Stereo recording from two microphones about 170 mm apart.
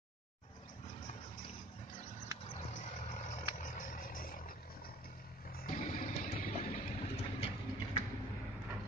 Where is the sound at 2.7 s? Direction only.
45° left (ahead or behind).